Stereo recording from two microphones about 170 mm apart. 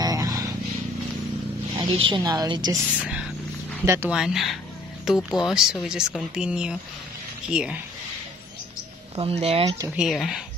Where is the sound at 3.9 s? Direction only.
15° right (ahead or behind).